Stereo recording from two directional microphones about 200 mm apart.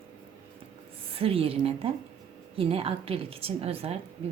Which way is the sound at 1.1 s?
30° right (ahead or behind).